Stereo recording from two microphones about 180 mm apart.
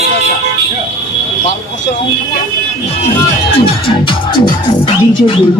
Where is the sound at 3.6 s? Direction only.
30° left (ahead or behind).